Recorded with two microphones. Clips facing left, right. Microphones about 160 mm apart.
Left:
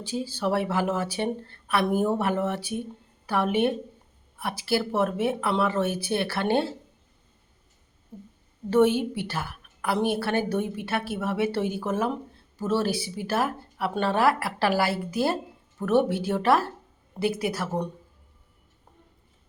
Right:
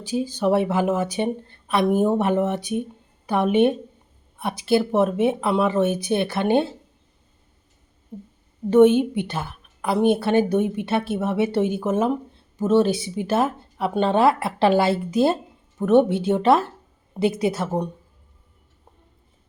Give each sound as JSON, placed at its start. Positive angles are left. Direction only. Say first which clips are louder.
{"t": 0.0, "sound": "a woman's voice", "louder": "right 6 dB", "side_deg": -15}
{"t": 8.1, "sound": "a woman's voice", "louder": "right 6 dB", "side_deg": -20}